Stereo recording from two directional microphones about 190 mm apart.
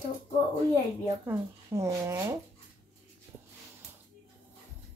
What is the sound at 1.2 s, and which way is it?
Speech, 15° right (ahead or behind).